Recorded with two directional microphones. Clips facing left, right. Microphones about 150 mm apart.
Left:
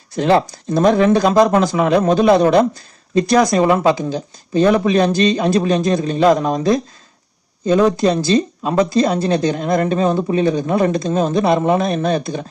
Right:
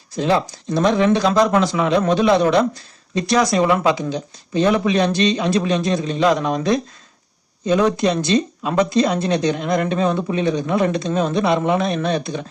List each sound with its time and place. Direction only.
0.2 s speech: 60° left (ahead or behind)
0.8 s a man's voice: 45° left (ahead or behind)